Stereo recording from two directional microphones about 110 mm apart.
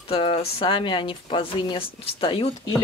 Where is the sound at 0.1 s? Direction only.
60° left (ahead or behind).